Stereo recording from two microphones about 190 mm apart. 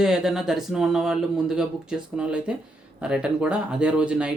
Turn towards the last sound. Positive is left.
turn(degrees=-5)  # may be behind; listen again after turning